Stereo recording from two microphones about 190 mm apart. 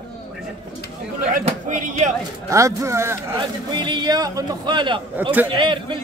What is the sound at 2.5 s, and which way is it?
Speech, 15° right (ahead or behind).